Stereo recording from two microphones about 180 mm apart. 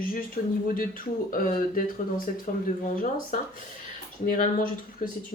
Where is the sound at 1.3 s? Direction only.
50° left (ahead or behind).